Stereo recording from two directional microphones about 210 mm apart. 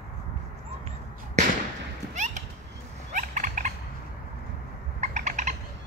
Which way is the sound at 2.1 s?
35° right (ahead or behind).